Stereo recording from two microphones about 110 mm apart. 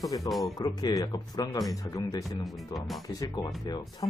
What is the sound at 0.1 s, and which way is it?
Speech, 40° left (ahead or behind).